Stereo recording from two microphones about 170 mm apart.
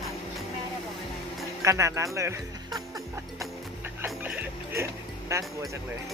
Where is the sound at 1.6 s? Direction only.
20° right (ahead or behind).